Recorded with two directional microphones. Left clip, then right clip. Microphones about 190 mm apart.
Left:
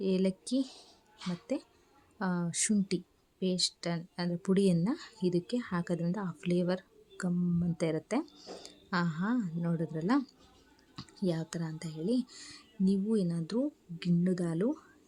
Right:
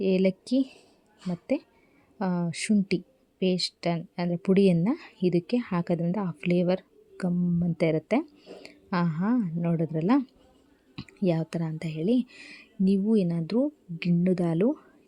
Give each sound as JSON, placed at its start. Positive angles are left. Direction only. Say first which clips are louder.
{"t": 0.0, "sound": "speech", "louder": "right 7 dB", "side_deg": -30}